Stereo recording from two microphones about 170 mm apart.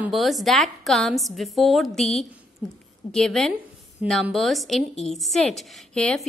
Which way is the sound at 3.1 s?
5° left (ahead or behind).